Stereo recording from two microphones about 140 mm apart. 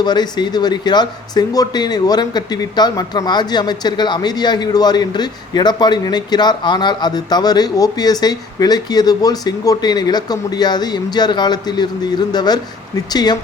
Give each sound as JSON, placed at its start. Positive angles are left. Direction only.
{"t": 0.0, "sound": "speech", "side_deg": 30}